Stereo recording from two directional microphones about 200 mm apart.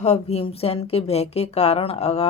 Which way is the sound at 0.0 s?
30° left (ahead or behind).